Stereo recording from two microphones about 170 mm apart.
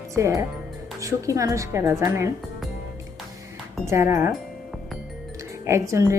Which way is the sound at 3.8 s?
15° right (ahead or behind).